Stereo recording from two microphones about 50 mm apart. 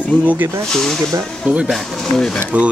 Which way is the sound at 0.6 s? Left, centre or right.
Centre.